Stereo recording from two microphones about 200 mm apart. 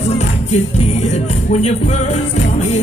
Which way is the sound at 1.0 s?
35° left (ahead or behind).